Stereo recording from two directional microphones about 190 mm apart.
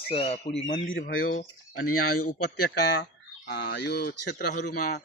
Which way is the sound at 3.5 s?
60° left (ahead or behind).